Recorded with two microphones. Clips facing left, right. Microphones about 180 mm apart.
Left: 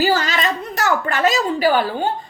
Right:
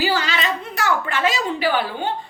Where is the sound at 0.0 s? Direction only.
45° left (ahead or behind).